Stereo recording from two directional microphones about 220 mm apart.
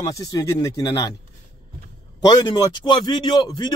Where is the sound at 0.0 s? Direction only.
15° left (ahead or behind).